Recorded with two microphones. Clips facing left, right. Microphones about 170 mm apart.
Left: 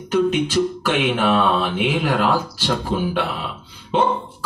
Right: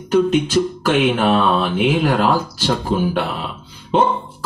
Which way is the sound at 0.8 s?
45° right (ahead or behind).